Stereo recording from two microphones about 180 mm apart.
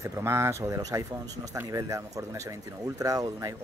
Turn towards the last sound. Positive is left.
turn(degrees=-20)  # may be behind; listen again after turning